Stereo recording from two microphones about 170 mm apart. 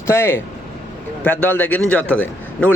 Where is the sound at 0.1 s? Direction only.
15° left (ahead or behind).